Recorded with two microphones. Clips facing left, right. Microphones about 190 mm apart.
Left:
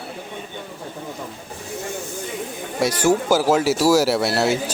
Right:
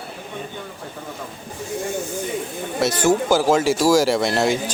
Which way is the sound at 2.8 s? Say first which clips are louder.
Even; 10° left (ahead or behind).